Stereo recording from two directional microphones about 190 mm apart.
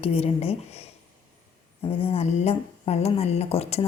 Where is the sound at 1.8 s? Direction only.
30° left (ahead or behind).